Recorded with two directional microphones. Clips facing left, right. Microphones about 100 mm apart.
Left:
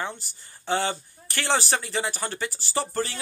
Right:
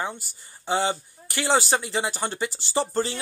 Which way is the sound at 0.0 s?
15° right (ahead or behind).